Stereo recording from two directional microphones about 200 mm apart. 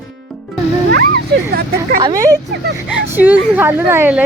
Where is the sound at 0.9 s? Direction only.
50° right (ahead or behind).